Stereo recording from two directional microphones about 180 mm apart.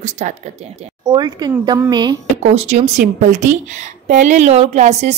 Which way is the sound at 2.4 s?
35° right (ahead or behind).